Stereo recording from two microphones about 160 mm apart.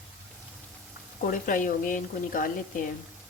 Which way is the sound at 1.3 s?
60° left (ahead or behind).